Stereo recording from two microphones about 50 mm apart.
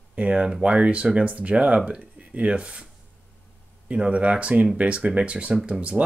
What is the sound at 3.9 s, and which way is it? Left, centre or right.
Speech, right.